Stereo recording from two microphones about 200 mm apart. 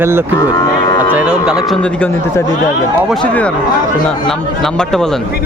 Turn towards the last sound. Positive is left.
turn(degrees=0)  # may be behind; listen again after turning